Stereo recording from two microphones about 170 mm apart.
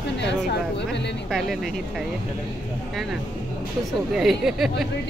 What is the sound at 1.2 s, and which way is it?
Speech, centre (ahead or behind).